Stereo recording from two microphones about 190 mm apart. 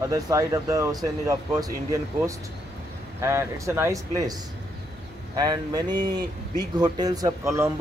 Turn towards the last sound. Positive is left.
turn(degrees=-15)  # may be behind; listen again after turning